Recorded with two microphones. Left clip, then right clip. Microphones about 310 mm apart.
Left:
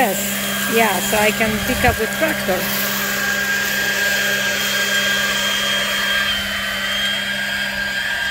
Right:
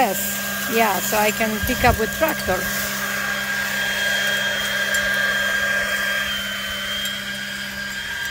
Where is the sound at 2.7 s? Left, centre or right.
Left.